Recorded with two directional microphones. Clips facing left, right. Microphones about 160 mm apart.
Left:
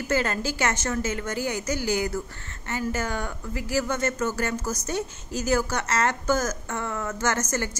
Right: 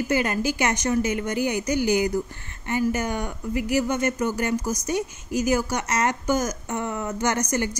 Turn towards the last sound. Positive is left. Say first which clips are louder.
# right 2 dB
turn(degrees=-15)  # may be behind; listen again after turning